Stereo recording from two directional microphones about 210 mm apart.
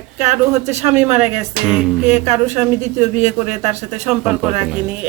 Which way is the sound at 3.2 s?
30° right (ahead or behind).